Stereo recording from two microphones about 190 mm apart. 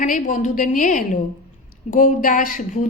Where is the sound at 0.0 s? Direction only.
40° left (ahead or behind).